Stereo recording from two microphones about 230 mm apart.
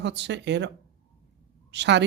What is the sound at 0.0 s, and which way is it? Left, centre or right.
Speech, right.